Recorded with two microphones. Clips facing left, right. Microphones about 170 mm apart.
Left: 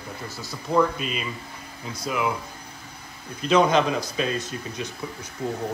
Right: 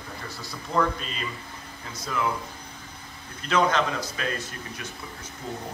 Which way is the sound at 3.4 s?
15° left (ahead or behind).